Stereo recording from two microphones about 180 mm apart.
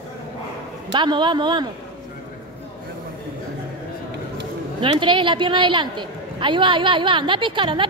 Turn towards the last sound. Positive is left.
turn(degrees=-30)  # may be behind; listen again after turning